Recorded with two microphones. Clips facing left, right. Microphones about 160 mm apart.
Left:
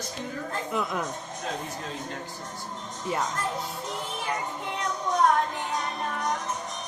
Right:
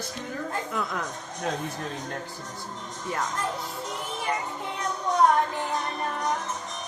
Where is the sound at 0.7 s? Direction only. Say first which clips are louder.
Left 4 dB; 15° left (ahead or behind).